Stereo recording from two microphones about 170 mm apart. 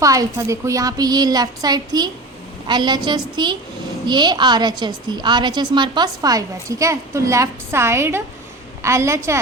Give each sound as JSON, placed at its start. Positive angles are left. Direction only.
{"t": 0.0, "sound": "a woman's voice", "side_deg": -20}